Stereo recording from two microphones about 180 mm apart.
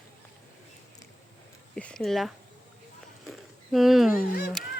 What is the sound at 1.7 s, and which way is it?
Speech, 5° left (ahead or behind).